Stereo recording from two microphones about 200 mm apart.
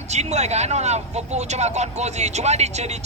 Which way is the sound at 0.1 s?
35° right (ahead or behind).